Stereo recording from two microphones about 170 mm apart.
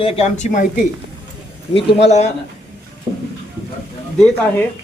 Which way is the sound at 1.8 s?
40° left (ahead or behind).